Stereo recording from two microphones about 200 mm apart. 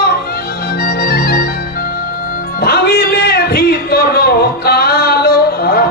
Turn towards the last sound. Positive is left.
turn(degrees=50)  # may be behind; listen again after turning